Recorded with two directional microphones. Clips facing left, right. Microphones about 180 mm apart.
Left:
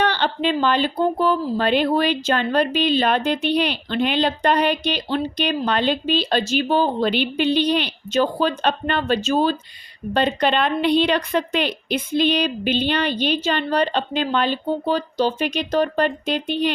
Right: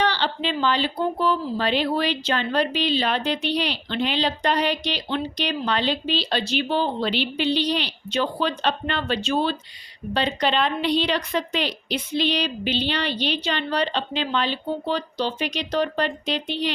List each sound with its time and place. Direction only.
0.0 s speech: 55° left (ahead or behind)